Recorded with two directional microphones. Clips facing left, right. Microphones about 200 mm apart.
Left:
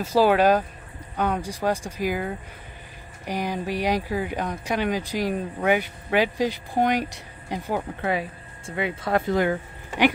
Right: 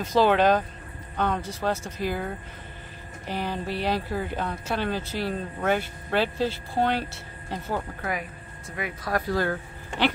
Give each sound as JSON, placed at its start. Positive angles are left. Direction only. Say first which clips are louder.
{"t": 0.0, "sound": "speech", "louder": "left 2 dB", "side_deg": 10}
{"t": 8.0, "sound": "speech", "louder": "left 5 dB", "side_deg": 30}